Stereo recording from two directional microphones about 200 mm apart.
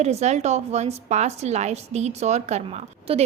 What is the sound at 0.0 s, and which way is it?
A woman's voice, 35° right (ahead or behind).